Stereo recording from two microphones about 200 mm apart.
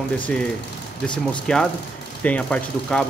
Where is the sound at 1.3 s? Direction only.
5° left (ahead or behind).